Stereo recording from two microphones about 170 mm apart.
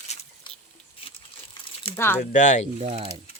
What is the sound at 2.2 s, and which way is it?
Speech, 45° left (ahead or behind).